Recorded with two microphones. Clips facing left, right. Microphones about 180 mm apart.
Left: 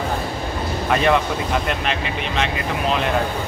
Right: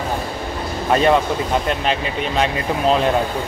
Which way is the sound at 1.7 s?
35° right (ahead or behind).